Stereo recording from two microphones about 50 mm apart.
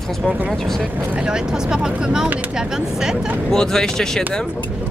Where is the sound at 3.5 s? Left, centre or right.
Centre.